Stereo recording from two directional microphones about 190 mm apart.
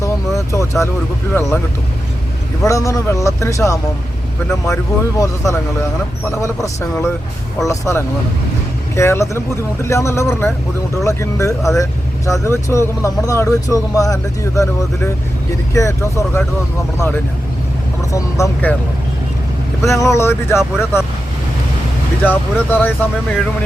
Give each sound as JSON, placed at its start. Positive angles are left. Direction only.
{"t": 0.0, "sound": "vehicle", "side_deg": 15}
{"t": 1.3, "sound": "speech", "side_deg": 15}
{"t": 2.6, "sound": "speech", "side_deg": 15}
{"t": 18.1, "sound": "speech", "side_deg": 15}
{"t": 19.9, "sound": "speech", "side_deg": 15}
{"t": 22.2, "sound": "speech", "side_deg": 10}